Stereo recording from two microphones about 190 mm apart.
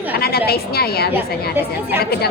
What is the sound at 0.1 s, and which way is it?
A woman's voice, 55° left (ahead or behind).